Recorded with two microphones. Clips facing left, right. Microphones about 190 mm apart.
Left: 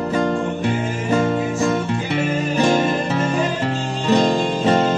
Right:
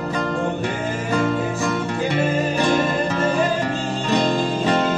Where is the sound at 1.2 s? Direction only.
25° left (ahead or behind).